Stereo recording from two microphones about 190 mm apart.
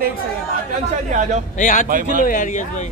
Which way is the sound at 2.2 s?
45° left (ahead or behind).